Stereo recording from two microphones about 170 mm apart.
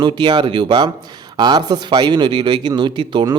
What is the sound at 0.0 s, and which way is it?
Speech, 25° right (ahead or behind).